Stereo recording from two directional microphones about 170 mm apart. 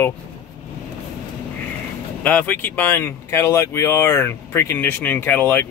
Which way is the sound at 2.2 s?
10° left (ahead or behind).